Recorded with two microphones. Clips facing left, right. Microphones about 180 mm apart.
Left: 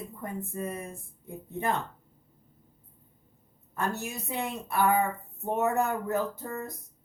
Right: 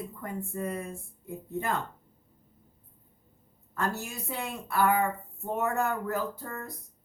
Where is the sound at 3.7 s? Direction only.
20° left (ahead or behind).